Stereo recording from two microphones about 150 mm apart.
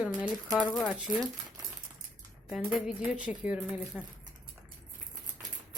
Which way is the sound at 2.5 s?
5° right (ahead or behind).